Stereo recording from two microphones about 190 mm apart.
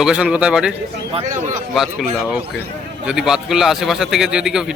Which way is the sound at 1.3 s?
45° right (ahead or behind).